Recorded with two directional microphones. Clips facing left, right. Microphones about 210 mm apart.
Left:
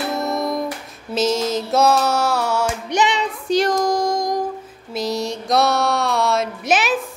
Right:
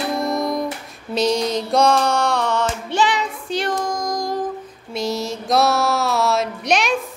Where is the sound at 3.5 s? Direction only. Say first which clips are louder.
Left 6 dB; 40° left (ahead or behind).